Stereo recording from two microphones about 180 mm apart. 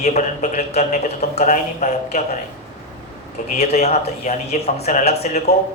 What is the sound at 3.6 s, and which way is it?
A man's voice, 35° left (ahead or behind).